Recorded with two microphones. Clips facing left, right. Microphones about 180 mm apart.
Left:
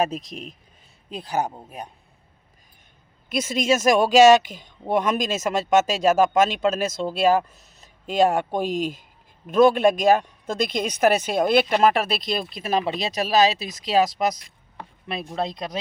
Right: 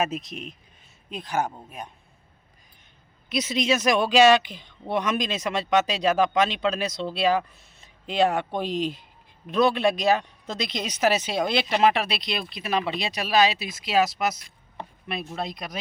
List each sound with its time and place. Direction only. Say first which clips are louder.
1.1 s speech: left 2 dB; 35° left (ahead or behind)
3.2 s a woman's voice: left 2 dB; 50° left (ahead or behind); by 15.8 s 30° left (ahead or behind)